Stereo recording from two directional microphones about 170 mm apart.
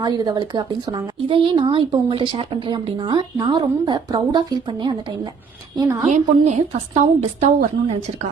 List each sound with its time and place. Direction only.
0.0 s a woman's voice: 25° right (ahead or behind)
6.1 s a woman's voice: 45° right (ahead or behind)